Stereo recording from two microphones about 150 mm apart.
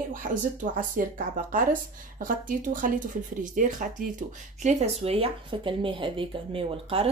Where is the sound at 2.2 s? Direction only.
65° right (ahead or behind); by 7.1 s 40° right (ahead or behind).